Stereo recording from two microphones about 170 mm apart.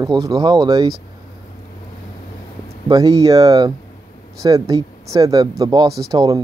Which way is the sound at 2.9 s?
20° right (ahead or behind).